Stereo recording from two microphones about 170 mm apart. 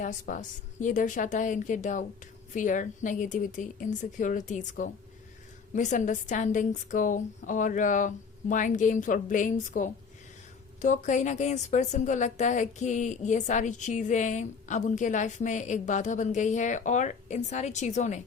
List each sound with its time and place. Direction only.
0.0 s a woman's voice: 50° left (ahead or behind)